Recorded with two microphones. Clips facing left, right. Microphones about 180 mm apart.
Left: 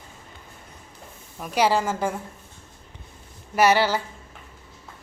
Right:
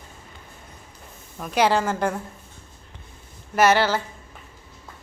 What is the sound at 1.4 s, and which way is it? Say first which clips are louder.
Speech: right 1 dB; 10° left (ahead or behind).